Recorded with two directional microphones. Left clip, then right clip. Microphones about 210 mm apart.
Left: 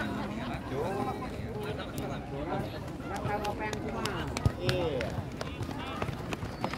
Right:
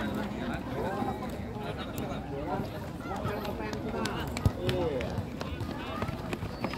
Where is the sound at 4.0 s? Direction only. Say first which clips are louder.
Even; 25° left (ahead or behind).